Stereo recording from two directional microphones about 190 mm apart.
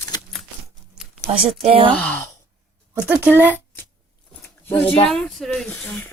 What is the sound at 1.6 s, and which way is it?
Speech, 30° right (ahead or behind).